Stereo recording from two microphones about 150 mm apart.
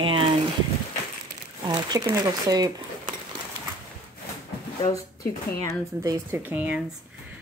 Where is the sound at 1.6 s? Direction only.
30° right (ahead or behind).